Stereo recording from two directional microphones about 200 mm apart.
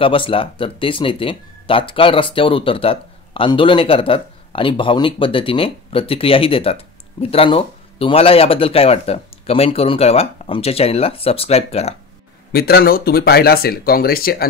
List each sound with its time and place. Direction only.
0.0 s speech: 25° left (ahead or behind)
12.5 s speech: 50° left (ahead or behind)